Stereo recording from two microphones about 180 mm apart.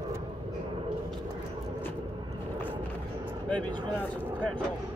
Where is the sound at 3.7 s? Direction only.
25° right (ahead or behind).